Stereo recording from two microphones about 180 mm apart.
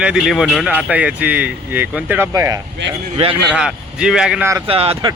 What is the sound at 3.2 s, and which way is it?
Speech, 30° right (ahead or behind).